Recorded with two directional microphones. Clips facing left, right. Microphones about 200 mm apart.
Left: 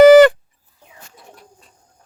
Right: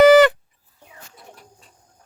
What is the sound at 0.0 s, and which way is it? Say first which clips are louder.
Dog: left 5 dB; 45° left (ahead or behind).